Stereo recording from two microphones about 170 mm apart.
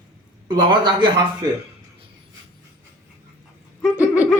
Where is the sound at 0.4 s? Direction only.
25° right (ahead or behind).